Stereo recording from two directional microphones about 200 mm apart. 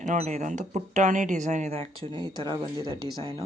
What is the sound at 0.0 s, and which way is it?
Speech, 35° right (ahead or behind).